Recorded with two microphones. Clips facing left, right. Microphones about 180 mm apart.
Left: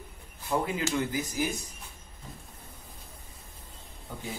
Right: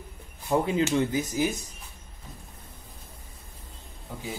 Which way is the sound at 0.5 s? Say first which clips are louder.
Right 5 dB; 25° right (ahead or behind).